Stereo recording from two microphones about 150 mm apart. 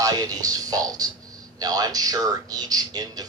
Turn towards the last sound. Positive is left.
turn(degrees=-25)  # may be behind; listen again after turning